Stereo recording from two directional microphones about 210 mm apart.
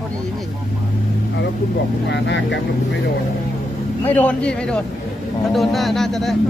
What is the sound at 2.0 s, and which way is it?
Speech, 55° left (ahead or behind).